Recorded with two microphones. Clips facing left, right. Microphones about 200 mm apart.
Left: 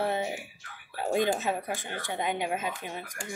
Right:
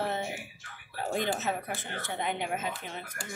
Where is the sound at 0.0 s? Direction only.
15° left (ahead or behind).